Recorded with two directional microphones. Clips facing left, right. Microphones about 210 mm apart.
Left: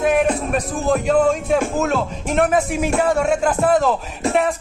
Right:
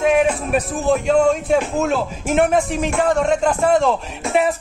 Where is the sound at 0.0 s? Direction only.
Centre (ahead or behind).